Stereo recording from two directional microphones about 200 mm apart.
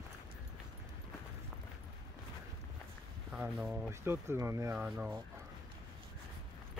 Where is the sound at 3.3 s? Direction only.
5° right (ahead or behind).